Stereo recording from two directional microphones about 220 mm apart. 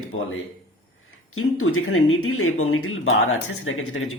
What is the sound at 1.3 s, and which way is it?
Speech, 75° left (ahead or behind).